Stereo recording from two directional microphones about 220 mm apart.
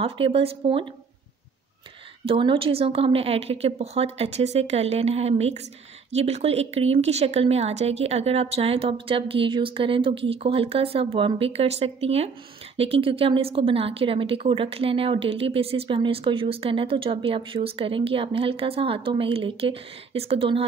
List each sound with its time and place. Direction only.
0.0 s a woman's voice: 25° right (ahead or behind)
2.2 s a woman's voice: 25° right (ahead or behind)